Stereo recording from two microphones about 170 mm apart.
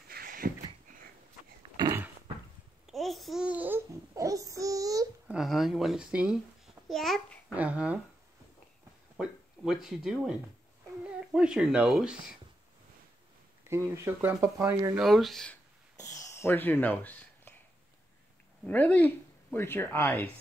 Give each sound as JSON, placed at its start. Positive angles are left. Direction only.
{"t": 0.1, "sound": "a sound", "side_deg": -55}
{"t": 1.8, "sound": "a sound", "side_deg": -15}
{"t": 2.9, "sound": "babbling", "side_deg": 0}
{"t": 5.3, "sound": "speech", "side_deg": 0}
{"t": 6.9, "sound": "babbling", "side_deg": 0}
{"t": 7.5, "sound": "speech", "side_deg": -5}
{"t": 9.1, "sound": "speech", "side_deg": -5}
{"t": 13.7, "sound": "speech", "side_deg": -15}
{"t": 15.0, "sound": "speech", "side_deg": 0}
{"t": 16.0, "sound": "a sound", "side_deg": 20}
{"t": 18.7, "sound": "speech", "side_deg": 10}